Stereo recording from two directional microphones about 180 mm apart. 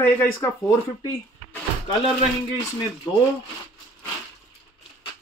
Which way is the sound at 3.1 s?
25° left (ahead or behind).